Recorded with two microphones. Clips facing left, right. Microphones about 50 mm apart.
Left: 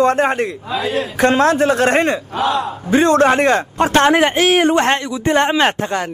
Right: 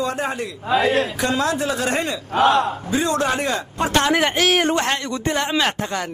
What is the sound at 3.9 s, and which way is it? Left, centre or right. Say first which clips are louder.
Speech: left 5 dB; left.